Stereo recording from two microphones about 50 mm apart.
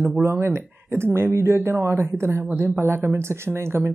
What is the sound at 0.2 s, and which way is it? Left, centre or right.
Speech, right.